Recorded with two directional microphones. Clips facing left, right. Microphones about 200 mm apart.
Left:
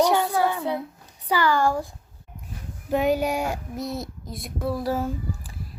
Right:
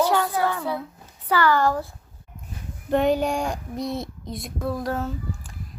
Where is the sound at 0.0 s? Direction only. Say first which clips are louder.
Left 1 dB; 20° left (ahead or behind).